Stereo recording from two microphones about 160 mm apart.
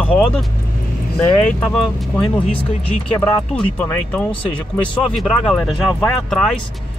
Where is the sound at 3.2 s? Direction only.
10° left (ahead or behind).